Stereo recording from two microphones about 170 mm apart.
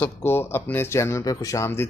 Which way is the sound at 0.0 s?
15° left (ahead or behind).